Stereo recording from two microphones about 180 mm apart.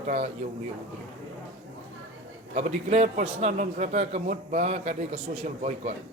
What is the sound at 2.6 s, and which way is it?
A man's voice, 40° right (ahead or behind).